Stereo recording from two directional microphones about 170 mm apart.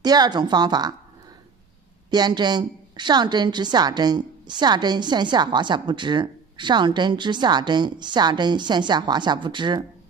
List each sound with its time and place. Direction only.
0.0 s a woman's voice: 25° right (ahead or behind)
2.0 s a woman's voice: 25° right (ahead or behind)